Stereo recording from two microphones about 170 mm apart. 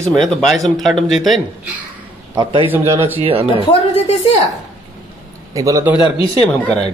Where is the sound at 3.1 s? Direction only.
35° right (ahead or behind).